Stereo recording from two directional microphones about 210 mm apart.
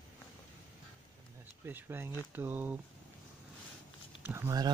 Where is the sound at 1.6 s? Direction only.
10° right (ahead or behind).